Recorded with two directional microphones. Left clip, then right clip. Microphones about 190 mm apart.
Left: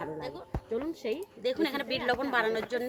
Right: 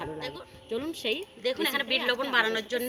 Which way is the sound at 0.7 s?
5° left (ahead or behind).